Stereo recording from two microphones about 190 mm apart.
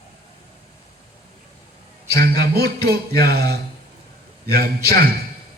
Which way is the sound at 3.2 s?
55° right (ahead or behind).